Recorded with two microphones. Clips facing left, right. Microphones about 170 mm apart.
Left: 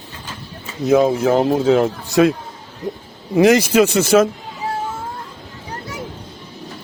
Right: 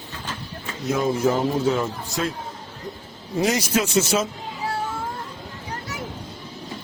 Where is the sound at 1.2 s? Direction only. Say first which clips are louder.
Left 5 dB; 65° left (ahead or behind).